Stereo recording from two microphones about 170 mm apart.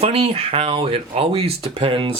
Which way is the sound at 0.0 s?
35° right (ahead or behind).